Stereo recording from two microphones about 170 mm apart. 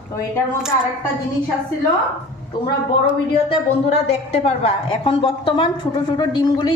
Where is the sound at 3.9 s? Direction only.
40° left (ahead or behind).